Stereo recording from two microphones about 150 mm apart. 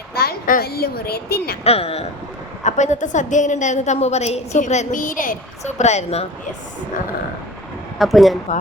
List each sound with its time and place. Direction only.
0.1 s speech: 90° left
1.6 s a woman's voice: 40° left (ahead or behind)
2.6 s a woman's voice: 50° left (ahead or behind)
7.9 s speech: centre (ahead or behind)